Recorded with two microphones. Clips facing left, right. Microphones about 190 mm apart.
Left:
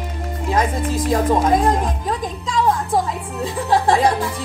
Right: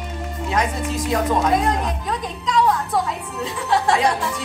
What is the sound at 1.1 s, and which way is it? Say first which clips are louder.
Music: left 3 dB; 30° left (ahead or behind).